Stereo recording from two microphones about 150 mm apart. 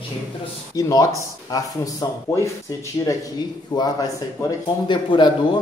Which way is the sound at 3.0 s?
20° left (ahead or behind).